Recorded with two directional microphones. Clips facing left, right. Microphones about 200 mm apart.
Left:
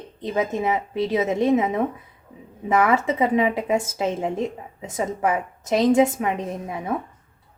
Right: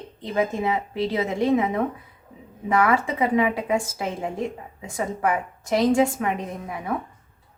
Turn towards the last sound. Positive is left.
turn(degrees=20)  # may be behind; listen again after turning